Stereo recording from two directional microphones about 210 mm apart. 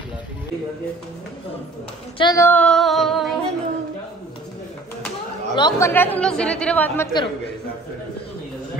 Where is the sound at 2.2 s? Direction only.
15° left (ahead or behind); by 3.3 s centre (ahead or behind).